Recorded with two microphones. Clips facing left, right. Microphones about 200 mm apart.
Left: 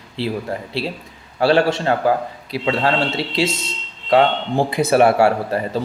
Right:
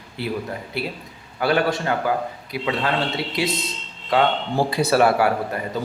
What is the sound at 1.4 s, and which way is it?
A man's voice, 30° left (ahead or behind).